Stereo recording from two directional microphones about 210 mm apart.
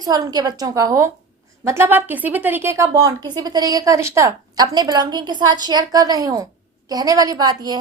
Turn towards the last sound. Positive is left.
turn(degrees=-20)  # may be behind; listen again after turning